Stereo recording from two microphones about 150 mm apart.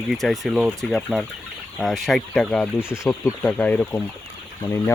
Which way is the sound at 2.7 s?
15° left (ahead or behind).